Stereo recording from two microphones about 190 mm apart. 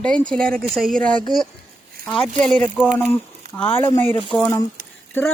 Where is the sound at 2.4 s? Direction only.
5° left (ahead or behind).